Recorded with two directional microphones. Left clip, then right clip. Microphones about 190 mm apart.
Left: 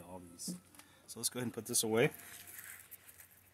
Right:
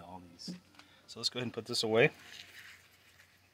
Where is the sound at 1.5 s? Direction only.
35° right (ahead or behind).